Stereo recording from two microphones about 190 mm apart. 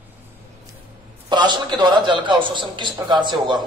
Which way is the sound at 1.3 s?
25° right (ahead or behind).